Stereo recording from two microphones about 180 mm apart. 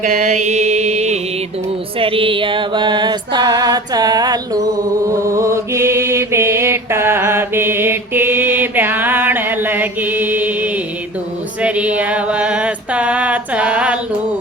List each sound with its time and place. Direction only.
0.0 s mantra: 45° right (ahead or behind)
2.0 s music: 30° right (ahead or behind)
5.0 s mantra: 15° right (ahead or behind)
11.6 s a sound: 5° right (ahead or behind)